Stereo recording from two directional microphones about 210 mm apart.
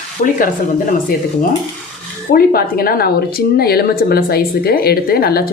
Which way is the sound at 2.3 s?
45° left (ahead or behind).